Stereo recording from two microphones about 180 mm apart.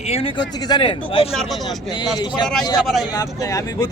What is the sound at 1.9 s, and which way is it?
Speech, 25° left (ahead or behind).